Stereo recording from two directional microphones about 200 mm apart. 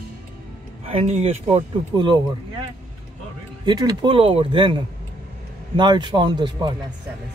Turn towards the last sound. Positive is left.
turn(degrees=-20)  # may be behind; listen again after turning